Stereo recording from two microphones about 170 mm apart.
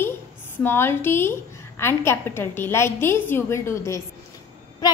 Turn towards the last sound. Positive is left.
turn(degrees=25)  # may be behind; listen again after turning